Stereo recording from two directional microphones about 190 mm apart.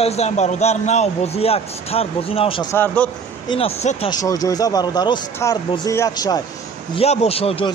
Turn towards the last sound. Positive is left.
turn(degrees=30)  # may be behind; listen again after turning